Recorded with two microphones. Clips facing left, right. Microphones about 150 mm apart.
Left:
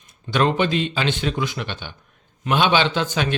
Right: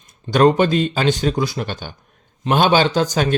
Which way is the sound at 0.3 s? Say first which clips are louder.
Right 6 dB; 45° right (ahead or behind).